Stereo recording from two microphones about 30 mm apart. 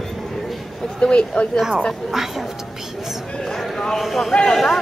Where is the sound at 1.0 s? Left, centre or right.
Left.